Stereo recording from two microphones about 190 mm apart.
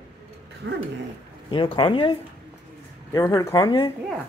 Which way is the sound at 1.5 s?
25° left (ahead or behind).